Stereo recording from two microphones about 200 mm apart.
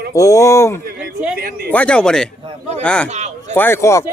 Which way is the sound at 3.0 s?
35° right (ahead or behind).